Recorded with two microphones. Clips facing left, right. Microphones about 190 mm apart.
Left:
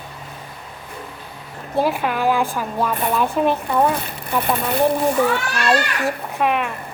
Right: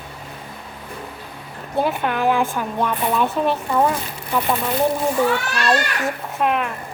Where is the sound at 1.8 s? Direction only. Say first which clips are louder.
Left 1 dB; 5° left (ahead or behind).